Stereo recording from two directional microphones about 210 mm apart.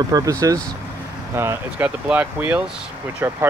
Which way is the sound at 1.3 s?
10° right (ahead or behind).